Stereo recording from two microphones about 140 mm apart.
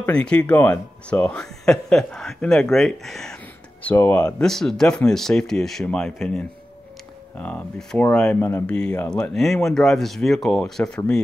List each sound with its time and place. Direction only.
0.0 s speech: 10° left (ahead or behind)
3.8 s speech: 15° left (ahead or behind)